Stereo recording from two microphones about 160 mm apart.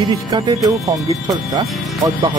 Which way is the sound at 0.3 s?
25° right (ahead or behind).